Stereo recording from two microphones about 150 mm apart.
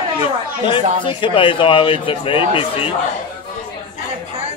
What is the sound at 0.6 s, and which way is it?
Speech, 35° left (ahead or behind).